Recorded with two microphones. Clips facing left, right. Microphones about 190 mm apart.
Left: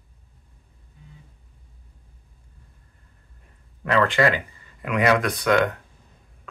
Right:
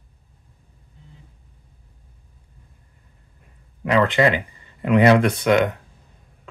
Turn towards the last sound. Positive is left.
turn(degrees=-20)  # may be behind; listen again after turning